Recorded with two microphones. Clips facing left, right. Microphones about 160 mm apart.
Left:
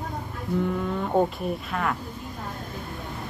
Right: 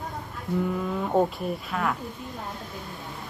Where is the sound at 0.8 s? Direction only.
Centre (ahead or behind).